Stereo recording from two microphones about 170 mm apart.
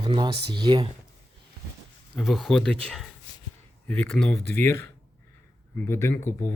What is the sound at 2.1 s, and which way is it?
Speech, centre (ahead or behind).